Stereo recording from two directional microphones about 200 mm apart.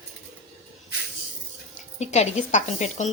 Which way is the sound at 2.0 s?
35° left (ahead or behind).